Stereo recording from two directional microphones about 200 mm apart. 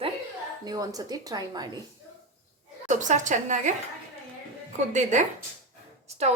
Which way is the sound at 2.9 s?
40° right (ahead or behind).